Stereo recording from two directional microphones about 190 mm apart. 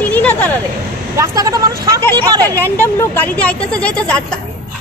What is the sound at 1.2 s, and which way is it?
Speech, 20° right (ahead or behind).